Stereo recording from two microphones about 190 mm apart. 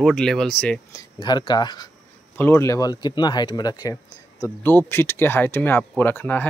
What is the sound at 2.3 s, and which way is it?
Speech, 10° left (ahead or behind).